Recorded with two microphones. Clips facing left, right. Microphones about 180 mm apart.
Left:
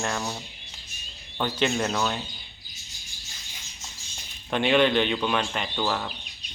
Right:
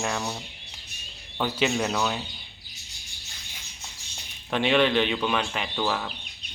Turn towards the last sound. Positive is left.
turn(degrees=0)  # may be behind; listen again after turning